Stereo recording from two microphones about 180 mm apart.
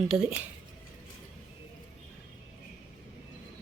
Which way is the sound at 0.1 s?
15° right (ahead or behind).